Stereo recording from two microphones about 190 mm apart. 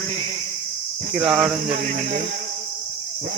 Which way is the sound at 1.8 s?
45° right (ahead or behind).